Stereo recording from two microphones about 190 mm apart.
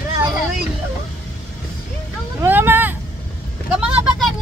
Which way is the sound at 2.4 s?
10° right (ahead or behind).